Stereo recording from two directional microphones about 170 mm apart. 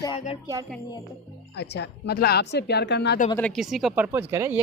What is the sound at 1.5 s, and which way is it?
Speech, 80° left.